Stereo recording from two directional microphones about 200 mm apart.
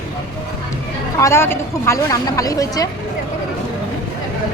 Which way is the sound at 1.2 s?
15° left (ahead or behind).